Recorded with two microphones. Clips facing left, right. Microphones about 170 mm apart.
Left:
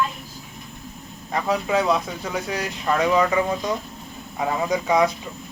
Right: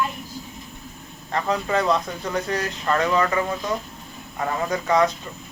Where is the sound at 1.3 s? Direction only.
10° left (ahead or behind).